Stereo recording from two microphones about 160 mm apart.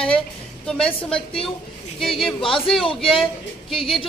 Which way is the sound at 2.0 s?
Centre (ahead or behind).